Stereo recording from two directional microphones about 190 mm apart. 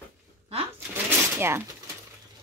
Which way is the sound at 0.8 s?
10° right (ahead or behind).